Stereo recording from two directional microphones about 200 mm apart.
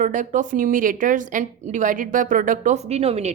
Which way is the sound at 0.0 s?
40° right (ahead or behind).